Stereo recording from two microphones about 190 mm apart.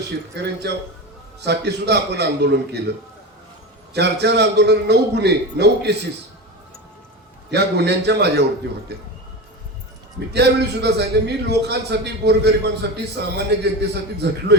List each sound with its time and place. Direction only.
0.3 s a man's voice: 60° right (ahead or behind)
3.9 s a man's voice: 60° right (ahead or behind)
7.5 s a man's voice: 60° right (ahead or behind)
10.2 s a man's voice: 60° right (ahead or behind)